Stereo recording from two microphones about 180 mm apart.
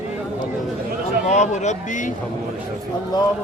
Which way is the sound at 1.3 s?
40° left (ahead or behind).